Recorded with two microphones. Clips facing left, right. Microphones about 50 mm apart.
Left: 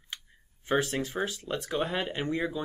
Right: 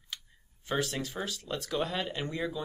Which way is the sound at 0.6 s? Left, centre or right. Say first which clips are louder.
Left 4 dB; left.